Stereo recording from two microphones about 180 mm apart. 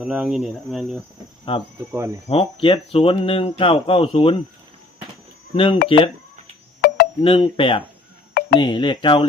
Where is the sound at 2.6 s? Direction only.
30° left (ahead or behind).